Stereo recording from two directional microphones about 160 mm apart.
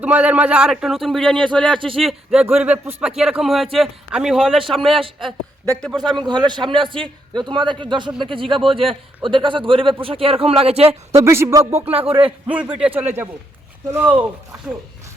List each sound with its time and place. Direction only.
0.0 s a man's voice: 10° right (ahead or behind)
6.2 s a man's voice: 25° right (ahead or behind)
11.1 s speech: 15° right (ahead or behind)
11.9 s a man's voice: 35° right (ahead or behind)
12.5 s speech: 10° right (ahead or behind)